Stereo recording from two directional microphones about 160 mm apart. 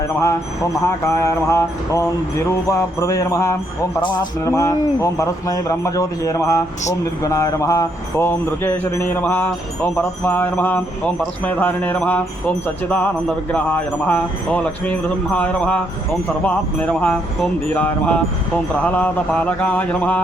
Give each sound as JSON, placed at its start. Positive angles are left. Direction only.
{"t": 0.2, "sound": "mantra", "side_deg": 20}
{"t": 7.0, "sound": "music", "side_deg": 20}
{"t": 16.9, "sound": "music", "side_deg": 5}